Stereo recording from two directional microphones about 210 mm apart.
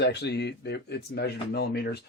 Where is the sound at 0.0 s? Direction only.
55° left (ahead or behind).